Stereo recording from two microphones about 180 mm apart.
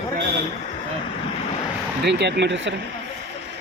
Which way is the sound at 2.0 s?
70° right (ahead or behind).